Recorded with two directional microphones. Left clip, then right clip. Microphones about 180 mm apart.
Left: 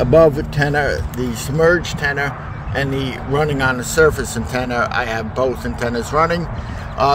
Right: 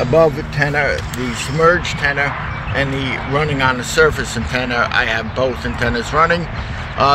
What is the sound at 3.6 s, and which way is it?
Speech, 90° left.